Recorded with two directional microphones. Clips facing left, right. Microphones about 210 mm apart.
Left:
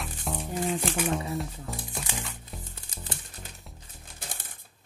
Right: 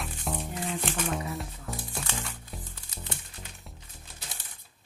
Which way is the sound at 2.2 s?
Centre (ahead or behind).